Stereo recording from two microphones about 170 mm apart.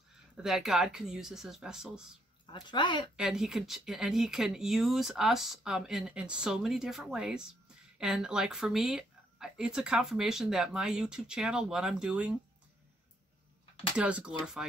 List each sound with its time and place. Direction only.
0.4 s speech: 5° right (ahead or behind)
2.4 s speech: 25° left (ahead or behind)
3.2 s speech: centre (ahead or behind)
13.9 s speech: 5° right (ahead or behind)